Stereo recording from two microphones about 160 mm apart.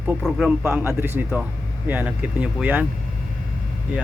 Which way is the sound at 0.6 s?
15° right (ahead or behind).